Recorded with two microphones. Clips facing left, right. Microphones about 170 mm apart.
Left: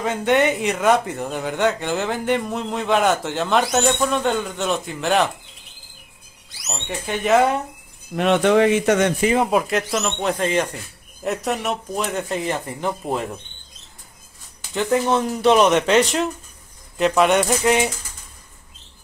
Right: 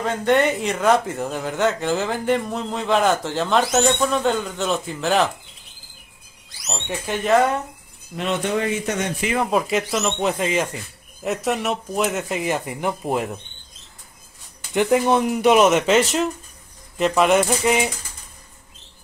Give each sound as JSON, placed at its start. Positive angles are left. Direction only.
{"t": 0.0, "sound": "speech", "side_deg": 5}
{"t": 6.7, "sound": "speech", "side_deg": 0}
{"t": 8.2, "sound": "a man's voice", "side_deg": 75}
{"t": 9.5, "sound": "speech", "side_deg": 0}
{"t": 14.7, "sound": "speech", "side_deg": -15}